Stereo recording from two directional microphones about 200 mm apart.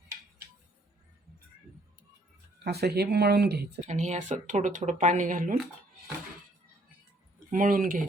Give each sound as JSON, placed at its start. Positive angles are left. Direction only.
{"t": 2.6, "sound": "speech", "side_deg": -55}
{"t": 3.8, "sound": "speech", "side_deg": -35}
{"t": 7.5, "sound": "speech", "side_deg": -40}